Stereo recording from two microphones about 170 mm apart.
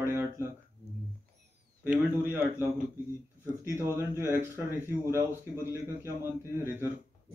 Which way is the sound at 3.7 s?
15° right (ahead or behind).